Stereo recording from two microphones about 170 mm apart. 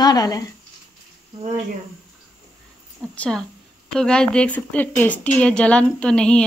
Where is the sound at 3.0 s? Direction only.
5° left (ahead or behind).